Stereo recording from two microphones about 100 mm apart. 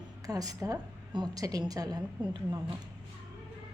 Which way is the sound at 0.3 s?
40° right (ahead or behind).